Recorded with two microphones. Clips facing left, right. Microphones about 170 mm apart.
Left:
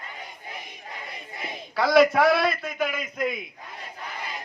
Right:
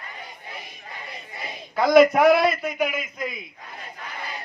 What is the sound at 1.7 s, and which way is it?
Speech, 15° right (ahead or behind).